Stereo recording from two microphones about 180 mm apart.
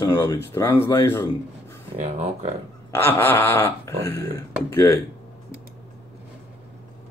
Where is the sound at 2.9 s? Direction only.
10° left (ahead or behind).